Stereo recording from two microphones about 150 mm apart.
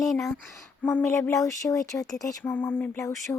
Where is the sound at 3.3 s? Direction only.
20° left (ahead or behind).